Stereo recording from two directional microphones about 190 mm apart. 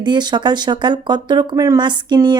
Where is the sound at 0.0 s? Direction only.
25° right (ahead or behind).